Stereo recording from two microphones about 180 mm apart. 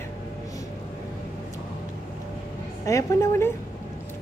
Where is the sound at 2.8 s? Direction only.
15° left (ahead or behind).